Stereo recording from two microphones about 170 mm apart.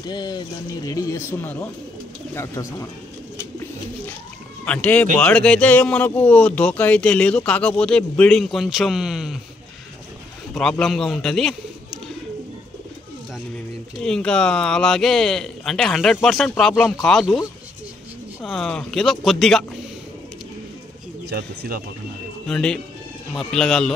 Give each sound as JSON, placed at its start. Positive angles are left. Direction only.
{"t": 0.0, "sound": "speech", "side_deg": 25}
{"t": 3.3, "sound": "bird", "side_deg": 15}
{"t": 4.6, "sound": "speech", "side_deg": 10}
{"t": 10.5, "sound": "speech", "side_deg": 5}
{"t": 14.0, "sound": "speech", "side_deg": 5}
{"t": 18.4, "sound": "speech", "side_deg": 5}
{"t": 21.3, "sound": "speech", "side_deg": -65}
{"t": 22.5, "sound": "speech", "side_deg": 5}